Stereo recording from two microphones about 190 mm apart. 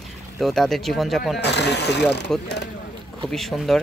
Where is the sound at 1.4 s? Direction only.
60° left (ahead or behind).